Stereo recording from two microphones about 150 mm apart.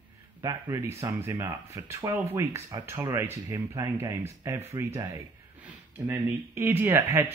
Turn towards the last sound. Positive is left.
turn(degrees=-15)  # may be behind; listen again after turning